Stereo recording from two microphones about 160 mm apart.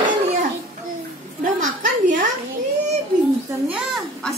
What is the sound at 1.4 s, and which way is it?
Speech, 55° right (ahead or behind).